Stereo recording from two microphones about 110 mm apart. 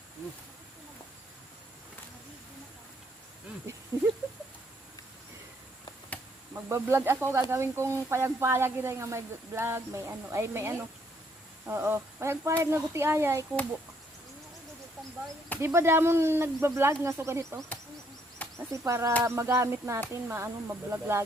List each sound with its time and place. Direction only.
6.5 s speech: 25° right (ahead or behind)
15.6 s speech: 25° right (ahead or behind)
18.7 s speech: 30° right (ahead or behind)